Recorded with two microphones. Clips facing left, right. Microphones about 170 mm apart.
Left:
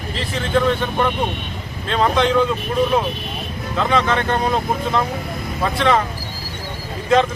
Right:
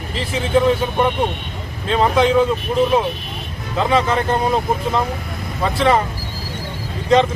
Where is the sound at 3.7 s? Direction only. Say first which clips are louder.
Right 2 dB; 5° right (ahead or behind).